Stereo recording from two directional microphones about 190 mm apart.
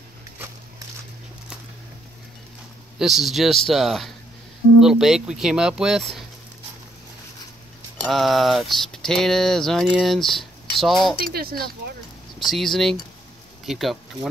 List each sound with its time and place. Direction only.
3.0 s speech: centre (ahead or behind)
8.1 s speech: centre (ahead or behind)
11.1 s speech: 50° right (ahead or behind)
12.4 s speech: centre (ahead or behind)